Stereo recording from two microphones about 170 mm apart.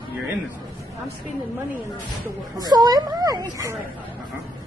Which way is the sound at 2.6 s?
25° right (ahead or behind).